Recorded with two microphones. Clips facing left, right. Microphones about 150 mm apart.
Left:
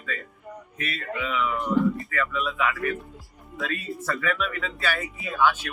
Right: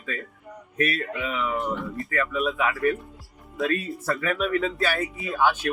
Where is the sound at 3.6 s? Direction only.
Centre (ahead or behind).